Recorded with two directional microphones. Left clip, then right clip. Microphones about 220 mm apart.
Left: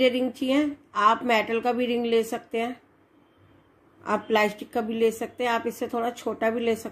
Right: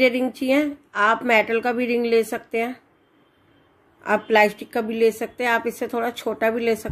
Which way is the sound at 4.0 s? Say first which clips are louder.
Right 6 dB; 20° right (ahead or behind).